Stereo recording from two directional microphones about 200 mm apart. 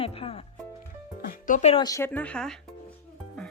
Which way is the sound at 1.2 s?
40° left (ahead or behind).